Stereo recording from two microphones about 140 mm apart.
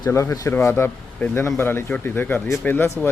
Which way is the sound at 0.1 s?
20° left (ahead or behind).